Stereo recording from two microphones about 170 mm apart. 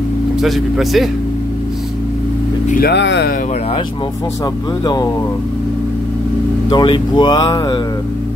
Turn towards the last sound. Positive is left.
turn(degrees=25)  # may be behind; listen again after turning